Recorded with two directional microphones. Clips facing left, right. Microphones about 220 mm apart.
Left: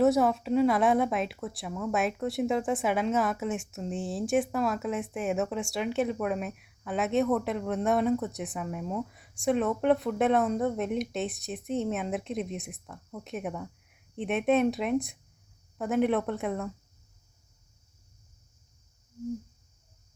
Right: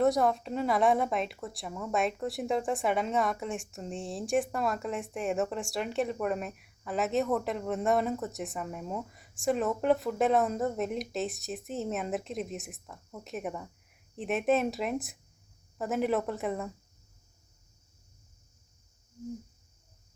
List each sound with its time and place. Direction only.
0.0 s a woman's voice: centre (ahead or behind)